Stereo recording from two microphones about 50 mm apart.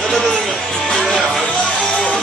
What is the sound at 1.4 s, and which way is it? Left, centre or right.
Music, left.